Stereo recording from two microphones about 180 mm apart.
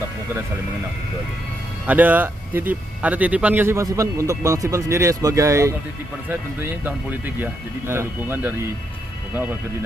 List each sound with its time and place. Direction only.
1.9 s speech: 10° right (ahead or behind)